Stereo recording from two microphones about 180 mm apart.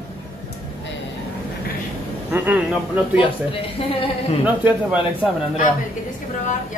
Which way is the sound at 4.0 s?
35° left (ahead or behind).